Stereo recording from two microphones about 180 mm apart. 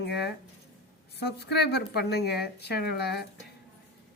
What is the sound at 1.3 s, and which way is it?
Speech, 65° left (ahead or behind).